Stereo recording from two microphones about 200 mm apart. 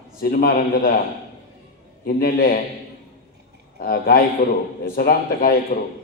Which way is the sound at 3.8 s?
45° left (ahead or behind).